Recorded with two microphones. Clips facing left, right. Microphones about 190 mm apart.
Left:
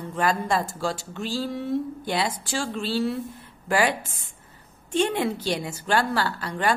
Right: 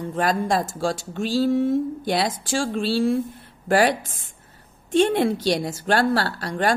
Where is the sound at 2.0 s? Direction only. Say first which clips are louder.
Right 4 dB; 90° right.